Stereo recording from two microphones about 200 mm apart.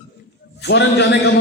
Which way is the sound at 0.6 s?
60° left (ahead or behind).